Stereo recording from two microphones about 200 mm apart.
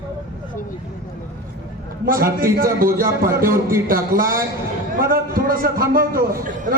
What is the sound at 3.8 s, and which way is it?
A man's voice, 45° right (ahead or behind).